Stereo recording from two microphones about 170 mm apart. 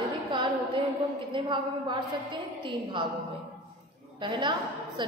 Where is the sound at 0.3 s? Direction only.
30° right (ahead or behind).